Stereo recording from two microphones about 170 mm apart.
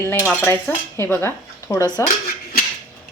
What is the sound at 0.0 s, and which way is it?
A woman's voice, 15° left (ahead or behind).